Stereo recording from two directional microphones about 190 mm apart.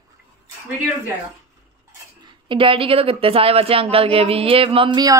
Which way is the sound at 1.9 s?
25° right (ahead or behind).